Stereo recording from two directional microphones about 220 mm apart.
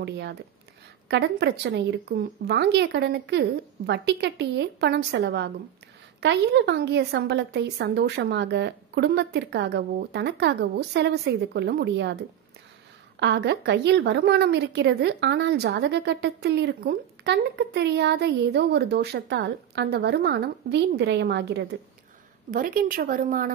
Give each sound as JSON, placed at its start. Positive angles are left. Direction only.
{"t": 0.0, "sound": "a woman's voice", "side_deg": -50}
{"t": 13.2, "sound": "a woman's voice", "side_deg": -50}
{"t": 22.5, "sound": "a woman's voice", "side_deg": -40}